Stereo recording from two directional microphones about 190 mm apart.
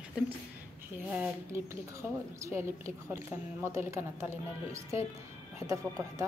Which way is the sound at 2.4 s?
15° right (ahead or behind).